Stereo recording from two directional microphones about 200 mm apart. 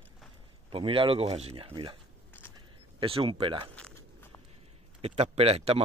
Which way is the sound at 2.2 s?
10° left (ahead or behind).